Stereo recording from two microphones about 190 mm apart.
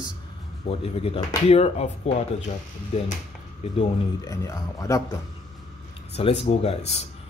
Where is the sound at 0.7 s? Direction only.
30° left (ahead or behind).